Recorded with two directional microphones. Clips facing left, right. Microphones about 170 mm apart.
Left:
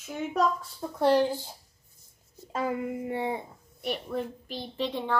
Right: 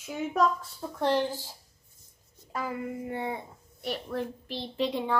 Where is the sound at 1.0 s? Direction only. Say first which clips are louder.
Left 4 dB; 10° left (ahead or behind).